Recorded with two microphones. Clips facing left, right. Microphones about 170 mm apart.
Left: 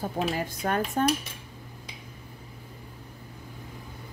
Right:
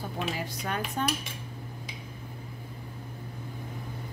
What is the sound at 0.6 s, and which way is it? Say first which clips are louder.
Dishes: left 7 dB; 50° left (ahead or behind).